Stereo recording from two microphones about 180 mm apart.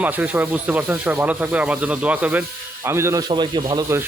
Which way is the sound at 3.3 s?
25° right (ahead or behind).